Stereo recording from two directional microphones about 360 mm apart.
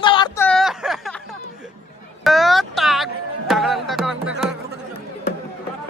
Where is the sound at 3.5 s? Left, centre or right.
Centre.